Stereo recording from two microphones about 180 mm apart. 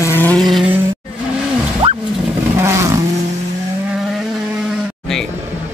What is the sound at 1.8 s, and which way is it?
Wild animals, 30° right (ahead or behind).